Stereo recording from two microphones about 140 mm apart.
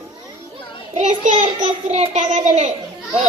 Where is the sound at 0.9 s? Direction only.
60° right (ahead or behind).